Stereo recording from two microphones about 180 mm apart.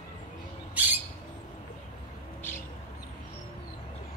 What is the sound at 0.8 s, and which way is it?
Bird, 10° right (ahead or behind).